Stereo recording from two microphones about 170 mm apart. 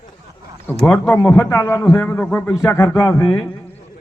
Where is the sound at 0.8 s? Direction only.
10° left (ahead or behind).